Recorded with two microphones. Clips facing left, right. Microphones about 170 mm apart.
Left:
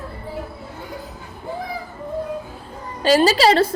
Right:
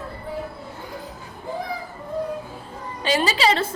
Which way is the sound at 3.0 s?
40° left (ahead or behind).